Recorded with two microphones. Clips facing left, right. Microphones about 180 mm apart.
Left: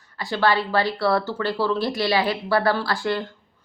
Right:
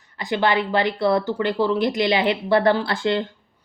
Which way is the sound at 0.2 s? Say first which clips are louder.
Right 1 dB; 20° right (ahead or behind).